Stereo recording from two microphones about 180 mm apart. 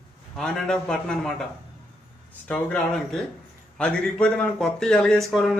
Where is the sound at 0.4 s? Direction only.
5° left (ahead or behind).